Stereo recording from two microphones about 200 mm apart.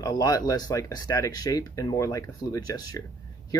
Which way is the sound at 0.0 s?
20° left (ahead or behind).